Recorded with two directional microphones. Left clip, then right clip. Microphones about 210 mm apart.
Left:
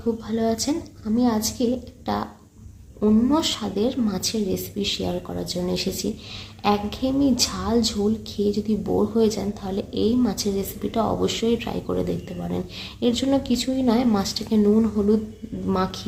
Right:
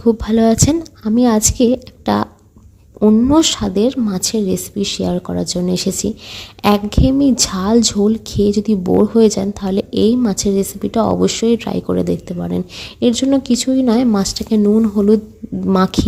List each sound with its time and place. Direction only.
0.0 s a woman's voice: 45° right (ahead or behind)